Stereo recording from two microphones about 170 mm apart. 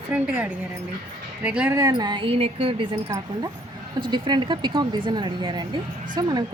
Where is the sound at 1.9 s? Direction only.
25° right (ahead or behind).